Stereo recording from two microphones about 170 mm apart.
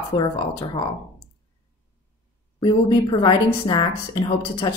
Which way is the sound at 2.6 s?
25° left (ahead or behind).